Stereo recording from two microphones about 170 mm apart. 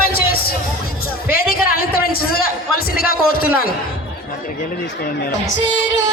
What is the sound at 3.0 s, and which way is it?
Speech, 60° left (ahead or behind).